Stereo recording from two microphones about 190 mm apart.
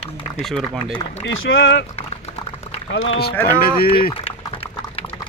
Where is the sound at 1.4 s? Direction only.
85° left.